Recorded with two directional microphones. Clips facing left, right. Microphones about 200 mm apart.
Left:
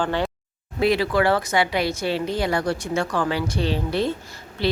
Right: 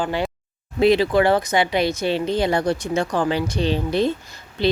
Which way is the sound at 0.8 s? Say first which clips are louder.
Right 4 dB; 20° right (ahead or behind).